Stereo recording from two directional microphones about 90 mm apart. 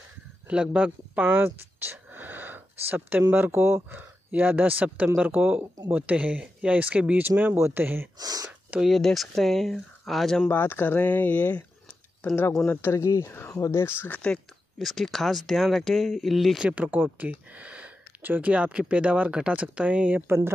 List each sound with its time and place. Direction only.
0.5 s speech: 15° right (ahead or behind)
8.2 s speech: 45° right (ahead or behind)
8.8 s speech: centre (ahead or behind)
10.5 s speech: 20° left (ahead or behind)
12.6 s speech: 30° left (ahead or behind); by 14.4 s 15° left (ahead or behind)
14.8 s speech: centre (ahead or behind)
16.6 s speech: 15° right (ahead or behind)
20.2 s speech: 25° right (ahead or behind)